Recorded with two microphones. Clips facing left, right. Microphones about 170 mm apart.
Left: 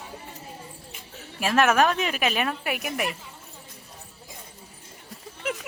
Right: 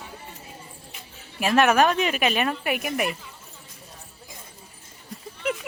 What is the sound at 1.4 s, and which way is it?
Speech, centre (ahead or behind).